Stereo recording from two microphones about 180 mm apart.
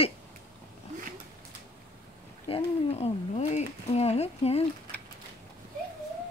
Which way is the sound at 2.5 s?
35° left (ahead or behind).